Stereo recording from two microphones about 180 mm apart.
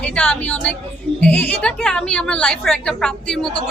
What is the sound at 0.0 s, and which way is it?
A woman's voice, 5° left (ahead or behind).